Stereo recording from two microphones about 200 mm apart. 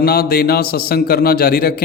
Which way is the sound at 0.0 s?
50° left (ahead or behind).